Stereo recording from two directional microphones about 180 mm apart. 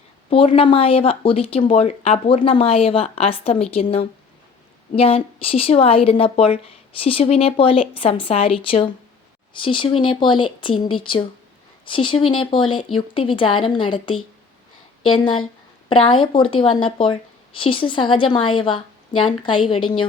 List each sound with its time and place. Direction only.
0.3 s speech: 30° left (ahead or behind)